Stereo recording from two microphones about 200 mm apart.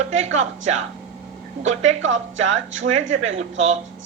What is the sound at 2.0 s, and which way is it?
Speech, 75° right (ahead or behind).